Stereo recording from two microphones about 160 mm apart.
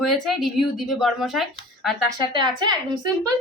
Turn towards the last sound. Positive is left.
turn(degrees=-25)  # may be behind; listen again after turning